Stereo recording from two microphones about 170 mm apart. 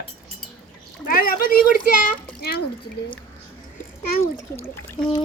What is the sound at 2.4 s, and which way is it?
Speech, 70° left (ahead or behind).